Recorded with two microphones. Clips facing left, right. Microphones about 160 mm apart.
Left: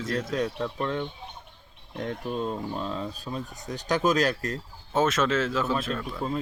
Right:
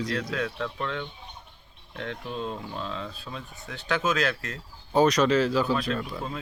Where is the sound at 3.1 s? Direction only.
40° left (ahead or behind).